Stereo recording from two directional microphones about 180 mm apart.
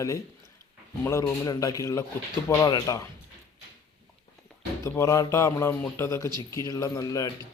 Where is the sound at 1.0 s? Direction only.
15° left (ahead or behind).